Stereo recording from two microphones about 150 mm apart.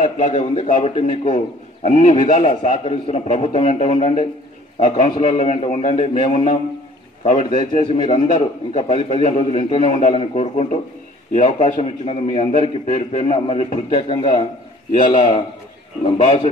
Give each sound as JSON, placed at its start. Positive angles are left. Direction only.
{"t": 0.3, "sound": "a man's voice", "side_deg": 40}
{"t": 4.7, "sound": "a man's voice", "side_deg": 55}
{"t": 12.8, "sound": "a man's voice", "side_deg": 50}
{"t": 15.0, "sound": "a man's voice", "side_deg": 35}
{"t": 16.0, "sound": "a man's voice", "side_deg": 45}